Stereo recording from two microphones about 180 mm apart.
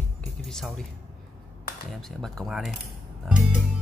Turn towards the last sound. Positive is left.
turn(degrees=-5)  # may be behind; listen again after turning